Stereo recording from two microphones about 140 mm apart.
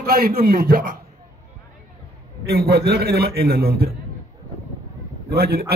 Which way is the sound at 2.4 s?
90° right.